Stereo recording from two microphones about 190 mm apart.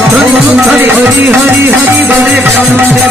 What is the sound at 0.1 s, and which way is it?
Music, 5° right (ahead or behind).